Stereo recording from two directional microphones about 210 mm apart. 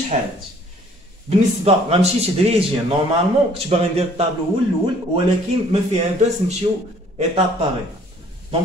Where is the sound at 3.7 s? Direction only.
30° right (ahead or behind).